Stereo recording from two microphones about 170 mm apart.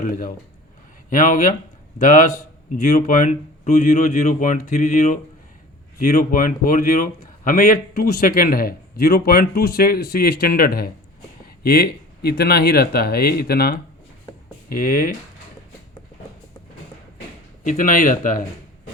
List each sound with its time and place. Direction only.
0.0 s a man's voice: 55° left (ahead or behind)
17.6 s a man's voice: 50° left (ahead or behind)